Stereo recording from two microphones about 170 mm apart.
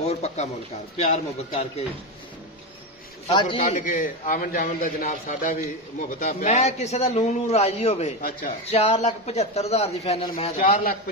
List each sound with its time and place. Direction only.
0.0 s a sound: 40° left (ahead or behind)
0.9 s a man's voice: 40° left (ahead or behind)
3.3 s a man's voice: 25° left (ahead or behind)
3.6 s a man's voice: 50° left (ahead or behind)
6.5 s a man's voice: 40° left (ahead or behind)
8.2 s a man's voice: 55° left (ahead or behind)
8.6 s a man's voice: 35° left (ahead or behind)
10.5 s a man's voice: 60° left (ahead or behind)